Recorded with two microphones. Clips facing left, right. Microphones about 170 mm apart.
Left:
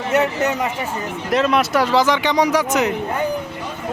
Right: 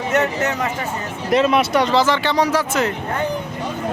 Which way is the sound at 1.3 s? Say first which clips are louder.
Right 1 dB; centre (ahead or behind).